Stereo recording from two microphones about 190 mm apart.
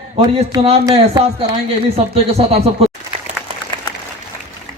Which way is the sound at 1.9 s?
30° right (ahead or behind).